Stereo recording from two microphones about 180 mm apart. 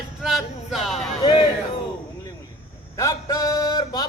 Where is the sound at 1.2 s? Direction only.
25° left (ahead or behind).